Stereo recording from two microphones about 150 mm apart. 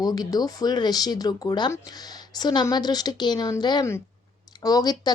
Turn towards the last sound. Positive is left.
turn(degrees=25)  # may be behind; listen again after turning